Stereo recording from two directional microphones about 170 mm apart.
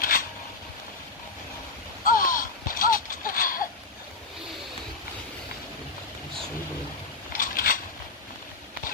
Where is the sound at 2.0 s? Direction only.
55° left (ahead or behind).